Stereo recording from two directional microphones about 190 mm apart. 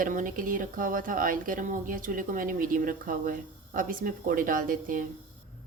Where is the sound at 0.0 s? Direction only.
45° right (ahead or behind).